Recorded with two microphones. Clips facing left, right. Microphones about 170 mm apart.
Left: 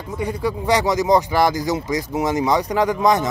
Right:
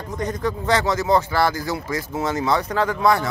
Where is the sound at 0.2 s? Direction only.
10° left (ahead or behind).